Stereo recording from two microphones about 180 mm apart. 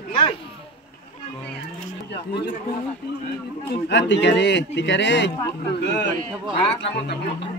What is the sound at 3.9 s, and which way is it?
A man's voice, 80° left.